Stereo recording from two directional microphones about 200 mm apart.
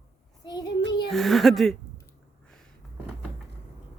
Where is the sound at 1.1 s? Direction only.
Centre (ahead or behind).